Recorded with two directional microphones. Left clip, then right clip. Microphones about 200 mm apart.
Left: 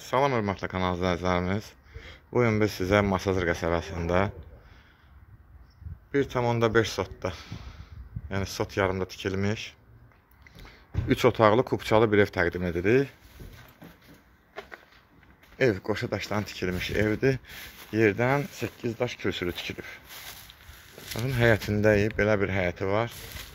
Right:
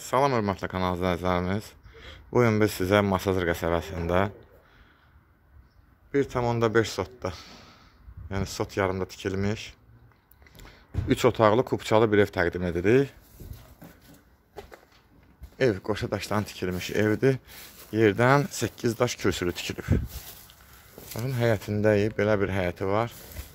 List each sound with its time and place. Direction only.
0.0 s speech: 10° right (ahead or behind)
6.1 s speech: 5° right (ahead or behind)
15.5 s speech: 5° right (ahead or behind); by 20.0 s 20° right (ahead or behind)
21.1 s speech: centre (ahead or behind)